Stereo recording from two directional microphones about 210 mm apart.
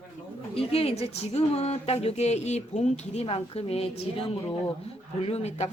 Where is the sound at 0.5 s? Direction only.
30° left (ahead or behind).